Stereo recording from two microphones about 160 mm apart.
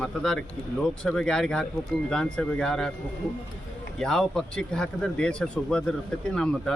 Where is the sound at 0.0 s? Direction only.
5° left (ahead or behind).